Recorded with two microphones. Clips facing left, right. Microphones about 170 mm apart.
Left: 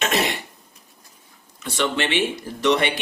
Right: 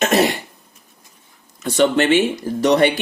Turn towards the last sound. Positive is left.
turn(degrees=-45)  # may be behind; listen again after turning